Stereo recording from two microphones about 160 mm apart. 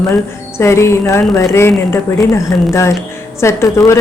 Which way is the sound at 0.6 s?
15° left (ahead or behind).